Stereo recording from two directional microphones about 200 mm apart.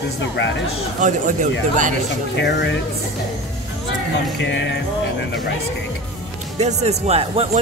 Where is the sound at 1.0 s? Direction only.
40° right (ahead or behind).